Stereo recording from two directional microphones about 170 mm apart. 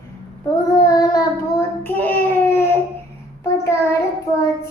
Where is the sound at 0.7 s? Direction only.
20° left (ahead or behind).